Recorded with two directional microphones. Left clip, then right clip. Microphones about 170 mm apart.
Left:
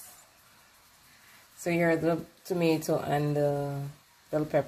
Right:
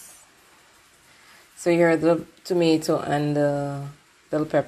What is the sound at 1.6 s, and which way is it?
A woman's voice, 20° right (ahead or behind).